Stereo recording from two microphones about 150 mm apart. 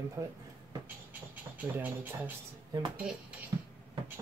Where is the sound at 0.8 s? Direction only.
10° right (ahead or behind).